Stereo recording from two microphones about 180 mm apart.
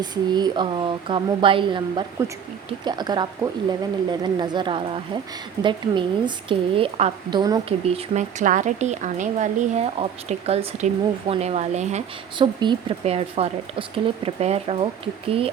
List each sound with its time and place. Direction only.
0.0 s speech: 25° right (ahead or behind)
7.9 s speech: 40° right (ahead or behind)
12.4 s speech: 25° right (ahead or behind)